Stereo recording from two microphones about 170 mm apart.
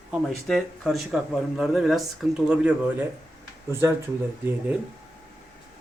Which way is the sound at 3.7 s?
15° right (ahead or behind).